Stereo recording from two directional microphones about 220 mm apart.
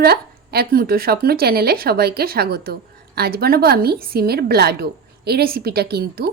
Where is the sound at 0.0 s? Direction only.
45° right (ahead or behind).